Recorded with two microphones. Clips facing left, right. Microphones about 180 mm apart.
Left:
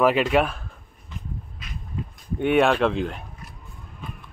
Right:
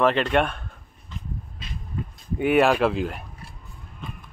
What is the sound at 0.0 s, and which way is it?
Speech, 5° left (ahead or behind).